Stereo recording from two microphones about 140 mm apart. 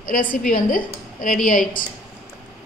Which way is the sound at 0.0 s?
80° left.